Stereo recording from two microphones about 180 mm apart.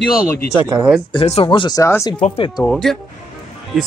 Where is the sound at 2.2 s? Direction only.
30° left (ahead or behind).